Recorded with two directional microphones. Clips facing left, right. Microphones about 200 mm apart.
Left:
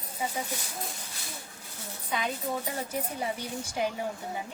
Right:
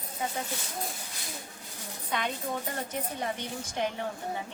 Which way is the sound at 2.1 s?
5° left (ahead or behind).